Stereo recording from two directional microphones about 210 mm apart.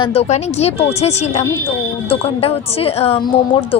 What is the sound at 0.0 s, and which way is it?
A woman's voice, 30° left (ahead or behind).